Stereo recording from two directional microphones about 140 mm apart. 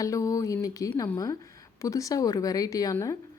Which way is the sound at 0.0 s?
25° left (ahead or behind).